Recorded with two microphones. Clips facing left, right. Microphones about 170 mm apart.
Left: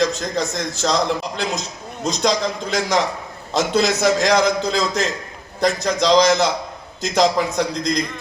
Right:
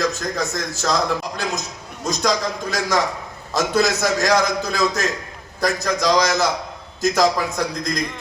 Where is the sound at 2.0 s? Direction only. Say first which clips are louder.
Left 2 dB; 25° left (ahead or behind).